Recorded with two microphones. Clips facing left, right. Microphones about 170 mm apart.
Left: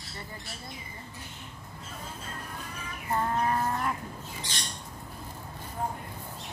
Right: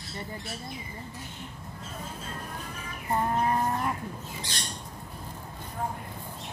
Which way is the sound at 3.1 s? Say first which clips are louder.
Right 1 dB; 20° right (ahead or behind).